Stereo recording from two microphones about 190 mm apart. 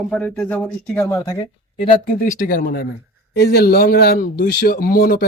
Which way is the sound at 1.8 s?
45° left (ahead or behind).